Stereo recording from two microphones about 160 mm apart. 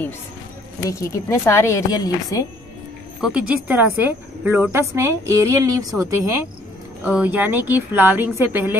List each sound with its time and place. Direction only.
0.8 s a woman's voice: 20° left (ahead or behind)
3.2 s a woman's voice: 5° right (ahead or behind); by 5.9 s 20° right (ahead or behind)
7.0 s speech: 10° right (ahead or behind)